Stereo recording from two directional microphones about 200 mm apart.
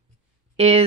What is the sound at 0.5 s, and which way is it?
Speech, 30° right (ahead or behind).